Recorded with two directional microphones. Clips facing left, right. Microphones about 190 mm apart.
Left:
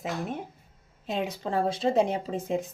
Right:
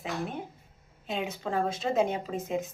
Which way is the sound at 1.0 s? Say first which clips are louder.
Left 2 dB; 35° left (ahead or behind).